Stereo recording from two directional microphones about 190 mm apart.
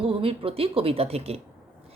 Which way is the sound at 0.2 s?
30° right (ahead or behind).